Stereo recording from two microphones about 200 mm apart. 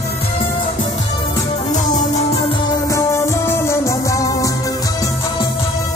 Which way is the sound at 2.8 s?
15° left (ahead or behind).